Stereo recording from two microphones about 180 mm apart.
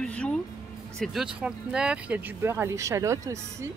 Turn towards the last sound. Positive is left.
turn(degrees=-15)  # may be behind; listen again after turning